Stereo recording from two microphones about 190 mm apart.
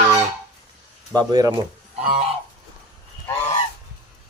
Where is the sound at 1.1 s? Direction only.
20° right (ahead or behind).